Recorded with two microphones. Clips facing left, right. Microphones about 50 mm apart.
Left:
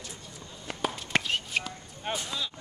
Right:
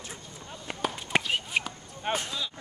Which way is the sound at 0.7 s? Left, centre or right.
Right.